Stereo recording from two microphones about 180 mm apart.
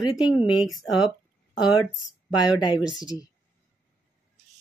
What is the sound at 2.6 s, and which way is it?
Speech, 25° left (ahead or behind).